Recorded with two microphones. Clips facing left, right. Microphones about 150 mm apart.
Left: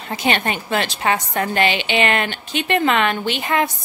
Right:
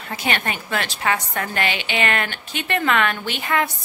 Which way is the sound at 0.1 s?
25° left (ahead or behind).